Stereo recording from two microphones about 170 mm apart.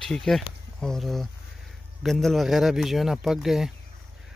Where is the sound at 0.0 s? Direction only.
Centre (ahead or behind).